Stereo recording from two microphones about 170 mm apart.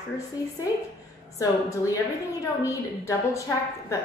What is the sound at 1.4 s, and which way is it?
A woman's voice, 20° left (ahead or behind).